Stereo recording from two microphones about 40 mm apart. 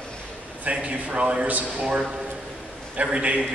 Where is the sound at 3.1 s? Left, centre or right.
Right.